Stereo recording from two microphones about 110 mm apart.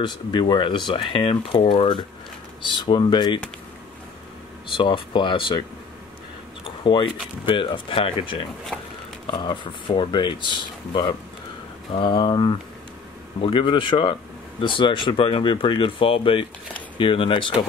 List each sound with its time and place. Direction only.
0.0 s speech: 45° left (ahead or behind)
4.7 s speech: 50° left (ahead or behind)
6.6 s a sound: 50° left (ahead or behind)
7.4 s speech: 50° left (ahead or behind)
8.7 s speech: 10° left (ahead or behind)
9.4 s speech: 45° left (ahead or behind)